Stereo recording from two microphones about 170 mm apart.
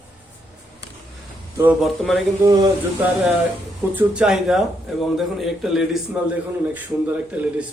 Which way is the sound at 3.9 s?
5° right (ahead or behind).